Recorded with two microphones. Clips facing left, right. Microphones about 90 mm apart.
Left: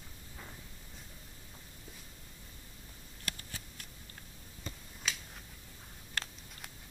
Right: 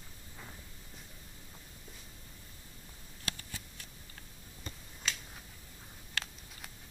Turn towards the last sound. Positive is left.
turn(degrees=0)  # may be behind; listen again after turning